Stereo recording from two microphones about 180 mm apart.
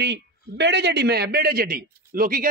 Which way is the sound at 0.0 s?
75° right (ahead or behind).